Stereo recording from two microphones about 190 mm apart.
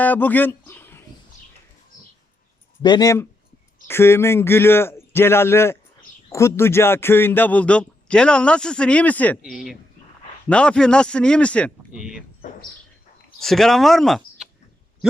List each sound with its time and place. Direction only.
0.0 s speech: 10° left (ahead or behind)
2.8 s a man's voice: 20° left (ahead or behind); by 12.2 s 5° right (ahead or behind)
13.4 s a man's voice: centre (ahead or behind)